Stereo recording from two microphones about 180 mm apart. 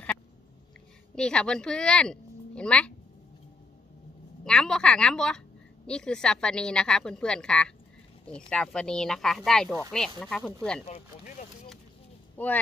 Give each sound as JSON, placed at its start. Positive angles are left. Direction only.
{"t": 1.1, "sound": "speech", "side_deg": 5}
{"t": 4.5, "sound": "a woman's voice", "side_deg": 5}
{"t": 12.4, "sound": "speech", "side_deg": 10}